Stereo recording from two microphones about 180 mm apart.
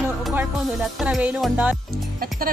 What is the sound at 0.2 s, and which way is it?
Music, 5° right (ahead or behind).